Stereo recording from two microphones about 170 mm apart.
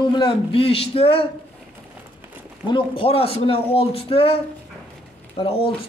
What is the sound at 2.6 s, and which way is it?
A man's voice, 30° left (ahead or behind).